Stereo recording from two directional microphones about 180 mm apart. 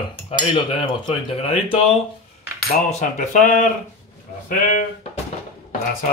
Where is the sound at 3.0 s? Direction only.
45° left (ahead or behind).